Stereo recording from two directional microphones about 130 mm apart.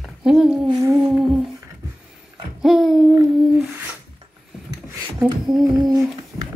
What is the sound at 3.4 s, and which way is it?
Humming, 10° right (ahead or behind).